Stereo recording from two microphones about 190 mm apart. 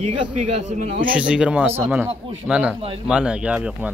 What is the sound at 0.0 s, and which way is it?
Speech, 35° right (ahead or behind).